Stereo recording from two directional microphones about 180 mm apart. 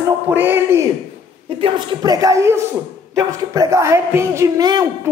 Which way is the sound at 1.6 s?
25° right (ahead or behind).